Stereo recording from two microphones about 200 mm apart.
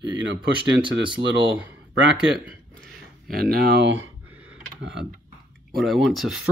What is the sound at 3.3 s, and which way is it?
Speech, 50° right (ahead or behind).